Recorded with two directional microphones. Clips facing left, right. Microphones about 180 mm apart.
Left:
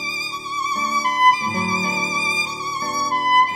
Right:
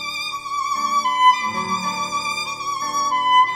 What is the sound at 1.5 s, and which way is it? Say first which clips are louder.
Violin: left 3 dB; 25° left (ahead or behind).